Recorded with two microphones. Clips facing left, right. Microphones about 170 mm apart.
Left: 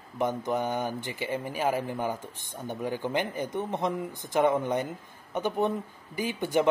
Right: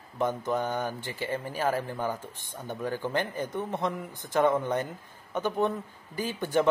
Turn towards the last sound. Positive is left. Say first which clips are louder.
# even
turn(degrees=15)  # may be behind; listen again after turning